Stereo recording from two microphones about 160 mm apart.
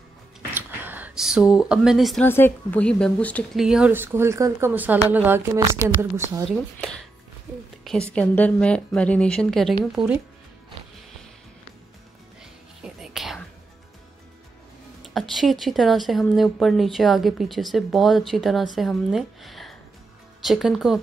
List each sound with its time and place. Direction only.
0.6 s speech: 10° right (ahead or behind)
2.2 s a woman's voice: 15° left (ahead or behind)
3.5 s speech: 5° right (ahead or behind)
6.5 s a woman's voice: 5° left (ahead or behind)
12.8 s whispering: centre (ahead or behind)
15.1 s speech: centre (ahead or behind)